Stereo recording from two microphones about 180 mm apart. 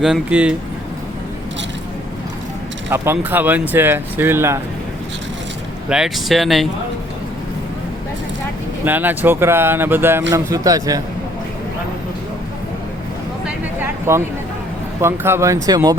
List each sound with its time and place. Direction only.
0.0 s speech: 5° right (ahead or behind)
2.9 s speech: 15° right (ahead or behind)
5.9 s speech: centre (ahead or behind)
8.8 s speech: 10° right (ahead or behind)
14.1 s speech: 15° right (ahead or behind)